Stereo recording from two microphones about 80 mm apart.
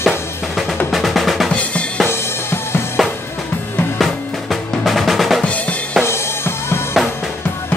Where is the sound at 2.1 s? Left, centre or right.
Left.